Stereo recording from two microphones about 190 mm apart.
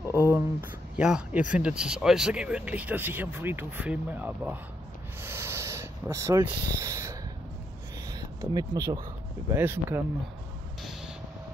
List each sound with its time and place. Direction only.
0.1 s speech: 10° right (ahead or behind)
5.2 s a sound: 15° right (ahead or behind)
8.1 s speech: 20° right (ahead or behind)
10.8 s vehicle: centre (ahead or behind)